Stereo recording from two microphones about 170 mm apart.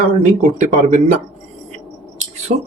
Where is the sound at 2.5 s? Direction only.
40° right (ahead or behind).